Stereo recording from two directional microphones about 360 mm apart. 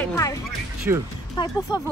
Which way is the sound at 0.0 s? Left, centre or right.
Centre.